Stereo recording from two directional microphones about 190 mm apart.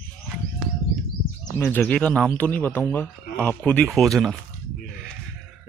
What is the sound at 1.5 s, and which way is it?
Speech, 15° left (ahead or behind).